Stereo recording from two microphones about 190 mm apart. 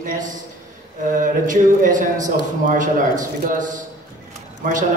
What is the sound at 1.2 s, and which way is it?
A man's voice, 45° right (ahead or behind).